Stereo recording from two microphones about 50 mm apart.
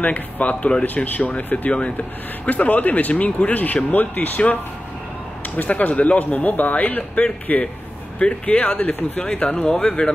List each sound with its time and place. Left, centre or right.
0.0 s speech: left
0.8 s speech: left
1.7 s speech: left
5.6 s speech: left